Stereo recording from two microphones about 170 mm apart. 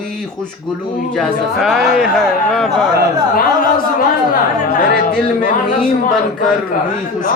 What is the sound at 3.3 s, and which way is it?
Speech, 60° left (ahead or behind).